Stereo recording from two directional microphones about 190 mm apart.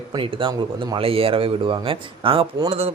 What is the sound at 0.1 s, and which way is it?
Speech, 25° right (ahead or behind).